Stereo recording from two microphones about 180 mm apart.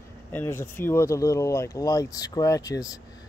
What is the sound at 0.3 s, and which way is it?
Speech, 10° left (ahead or behind).